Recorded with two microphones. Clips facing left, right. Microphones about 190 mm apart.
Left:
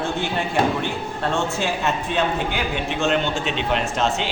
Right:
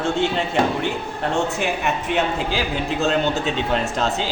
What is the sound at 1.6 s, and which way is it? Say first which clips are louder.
Speech: even; 15° right (ahead or behind).